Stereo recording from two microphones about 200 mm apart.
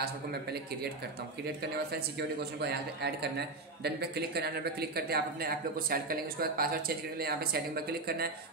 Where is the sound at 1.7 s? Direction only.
55° right (ahead or behind).